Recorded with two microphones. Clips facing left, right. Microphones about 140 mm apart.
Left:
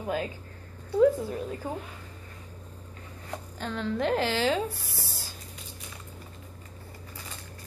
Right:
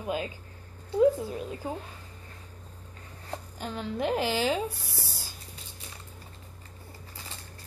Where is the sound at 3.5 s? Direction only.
10° right (ahead or behind).